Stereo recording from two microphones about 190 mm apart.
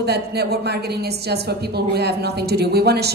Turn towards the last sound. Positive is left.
turn(degrees=-60)  # may be behind; listen again after turning